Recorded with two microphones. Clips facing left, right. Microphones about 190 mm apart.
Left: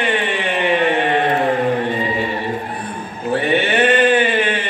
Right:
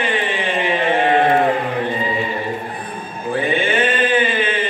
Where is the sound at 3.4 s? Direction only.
70° left (ahead or behind).